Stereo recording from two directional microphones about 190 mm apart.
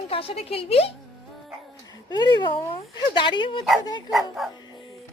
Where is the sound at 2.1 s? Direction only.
20° left (ahead or behind).